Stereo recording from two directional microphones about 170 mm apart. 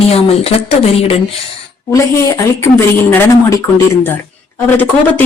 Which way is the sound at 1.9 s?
15° left (ahead or behind).